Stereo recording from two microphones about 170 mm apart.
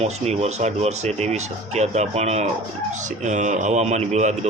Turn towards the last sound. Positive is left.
turn(degrees=-40)  # may be behind; listen again after turning